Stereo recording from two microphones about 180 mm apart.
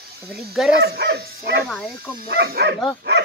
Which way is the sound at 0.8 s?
60° right (ahead or behind).